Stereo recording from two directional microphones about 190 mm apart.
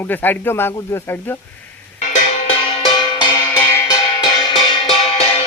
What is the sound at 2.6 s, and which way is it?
Music, 25° left (ahead or behind).